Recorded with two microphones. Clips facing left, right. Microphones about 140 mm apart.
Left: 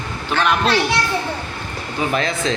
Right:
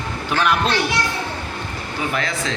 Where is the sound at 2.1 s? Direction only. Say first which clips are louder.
Left 5 dB; 25° left (ahead or behind).